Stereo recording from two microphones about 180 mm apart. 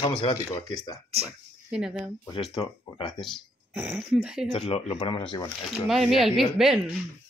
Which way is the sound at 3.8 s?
5° right (ahead or behind).